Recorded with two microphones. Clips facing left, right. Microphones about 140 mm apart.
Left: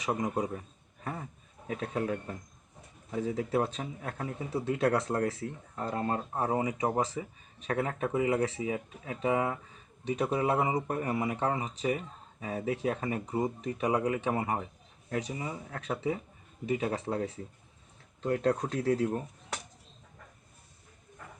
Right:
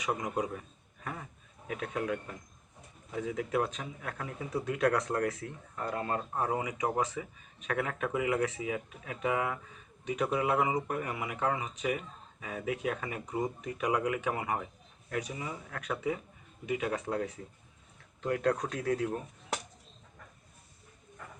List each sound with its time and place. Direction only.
0.1 s speech: 25° left (ahead or behind)